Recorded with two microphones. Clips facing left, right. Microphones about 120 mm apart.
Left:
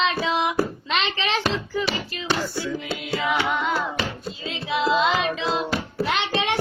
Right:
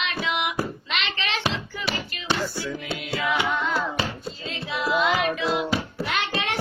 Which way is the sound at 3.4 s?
20° left (ahead or behind).